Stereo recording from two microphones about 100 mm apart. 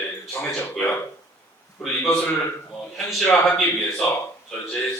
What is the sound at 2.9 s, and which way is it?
A man's voice, centre (ahead or behind).